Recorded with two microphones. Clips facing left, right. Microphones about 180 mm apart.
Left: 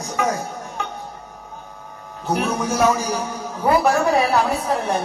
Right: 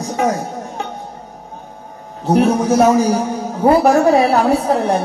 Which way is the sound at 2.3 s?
30° right (ahead or behind).